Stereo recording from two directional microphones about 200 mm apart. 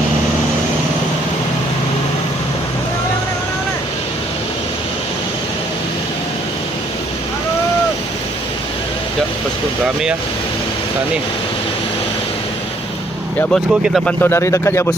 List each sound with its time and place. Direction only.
13.5 s speech: centre (ahead or behind)